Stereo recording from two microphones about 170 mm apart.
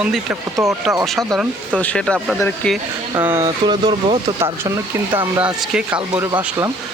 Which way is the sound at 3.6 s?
30° right (ahead or behind).